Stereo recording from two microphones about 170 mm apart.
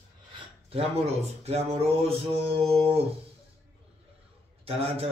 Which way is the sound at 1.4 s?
35° right (ahead or behind).